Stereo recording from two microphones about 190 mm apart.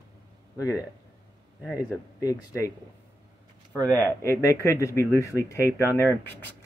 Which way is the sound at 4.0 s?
15° left (ahead or behind).